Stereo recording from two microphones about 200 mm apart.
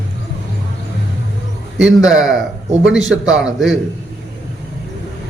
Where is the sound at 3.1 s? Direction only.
70° right (ahead or behind).